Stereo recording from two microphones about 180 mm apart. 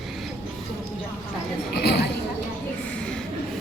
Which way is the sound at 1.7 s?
65° left (ahead or behind).